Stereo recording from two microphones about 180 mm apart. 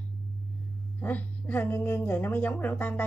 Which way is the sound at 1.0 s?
10° left (ahead or behind).